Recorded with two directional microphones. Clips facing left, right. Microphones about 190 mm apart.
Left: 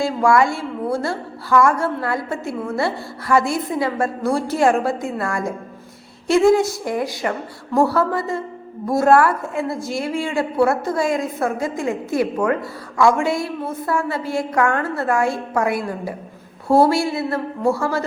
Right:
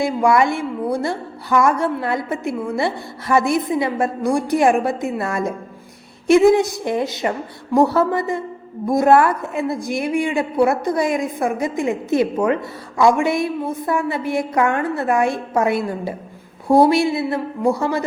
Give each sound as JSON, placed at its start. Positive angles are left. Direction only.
{"t": 0.0, "sound": "a woman's voice", "side_deg": -20}